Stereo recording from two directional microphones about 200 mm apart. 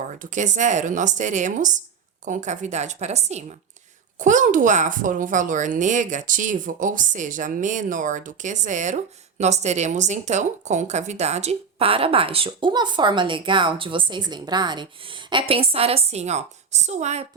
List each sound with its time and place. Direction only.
0.2 s speech: 40° right (ahead or behind)